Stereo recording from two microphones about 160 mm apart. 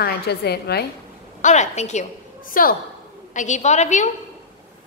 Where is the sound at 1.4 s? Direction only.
45° left (ahead or behind).